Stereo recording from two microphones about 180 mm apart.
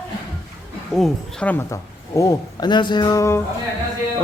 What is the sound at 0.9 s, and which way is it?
Speech, 5° left (ahead or behind).